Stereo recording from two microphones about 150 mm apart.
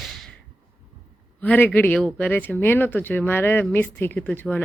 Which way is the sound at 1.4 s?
10° left (ahead or behind).